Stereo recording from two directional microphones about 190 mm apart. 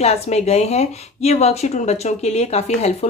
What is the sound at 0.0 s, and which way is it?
A woman's voice, 35° left (ahead or behind).